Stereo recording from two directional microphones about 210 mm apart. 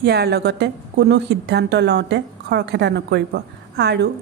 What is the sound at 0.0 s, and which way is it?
A woman's voice, 50° right (ahead or behind).